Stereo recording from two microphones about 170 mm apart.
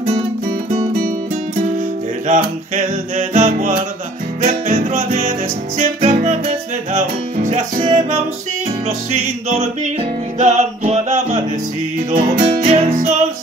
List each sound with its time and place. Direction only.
2.2 s music: 45° right (ahead or behind)
6.1 s music: 45° right (ahead or behind)
7.4 s music: 40° right (ahead or behind)